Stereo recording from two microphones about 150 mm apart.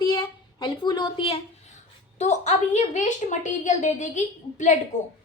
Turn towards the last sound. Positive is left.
turn(degrees=55)  # may be behind; listen again after turning